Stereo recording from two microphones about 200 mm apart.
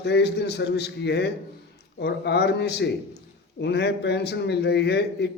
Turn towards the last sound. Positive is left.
turn(degrees=55)  # may be behind; listen again after turning